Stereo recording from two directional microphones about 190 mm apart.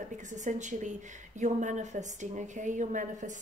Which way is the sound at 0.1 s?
40° right (ahead or behind).